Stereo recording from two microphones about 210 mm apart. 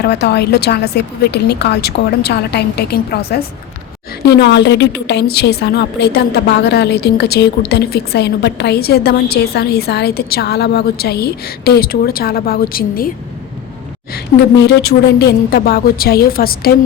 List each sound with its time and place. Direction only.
0.0 s a woman's voice: 50° left (ahead or behind)
14.1 s a woman's voice: 50° left (ahead or behind)